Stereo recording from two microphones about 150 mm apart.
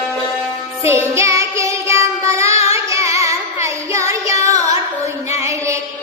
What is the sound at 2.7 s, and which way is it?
Music, 20° right (ahead or behind).